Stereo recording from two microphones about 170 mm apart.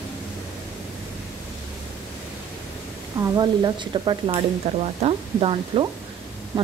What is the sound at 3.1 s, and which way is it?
Speech, 20° right (ahead or behind).